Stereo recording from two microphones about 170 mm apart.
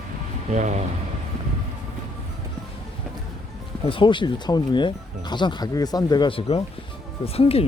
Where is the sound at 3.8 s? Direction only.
30° left (ahead or behind).